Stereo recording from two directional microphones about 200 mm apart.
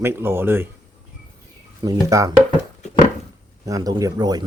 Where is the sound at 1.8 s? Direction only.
15° right (ahead or behind).